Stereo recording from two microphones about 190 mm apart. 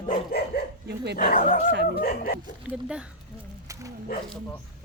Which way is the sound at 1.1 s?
45° left (ahead or behind).